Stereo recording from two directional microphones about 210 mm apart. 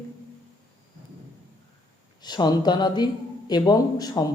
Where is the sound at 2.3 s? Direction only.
20° left (ahead or behind).